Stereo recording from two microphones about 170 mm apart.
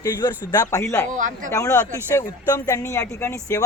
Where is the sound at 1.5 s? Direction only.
20° left (ahead or behind).